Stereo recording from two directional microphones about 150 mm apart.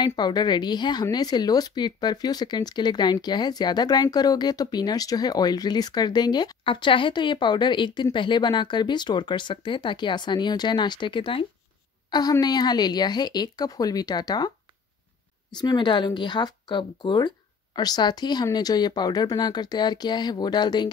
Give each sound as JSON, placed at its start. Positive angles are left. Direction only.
{"t": 0.0, "sound": "speech", "side_deg": 30}
{"t": 15.5, "sound": "speech", "side_deg": 30}